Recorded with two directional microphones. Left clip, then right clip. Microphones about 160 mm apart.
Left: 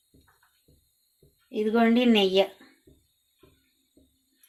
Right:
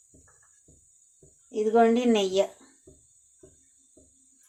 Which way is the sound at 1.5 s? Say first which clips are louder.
Right 2 dB; 50° left (ahead or behind).